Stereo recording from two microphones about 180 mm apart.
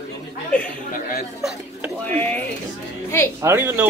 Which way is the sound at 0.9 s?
50° left (ahead or behind).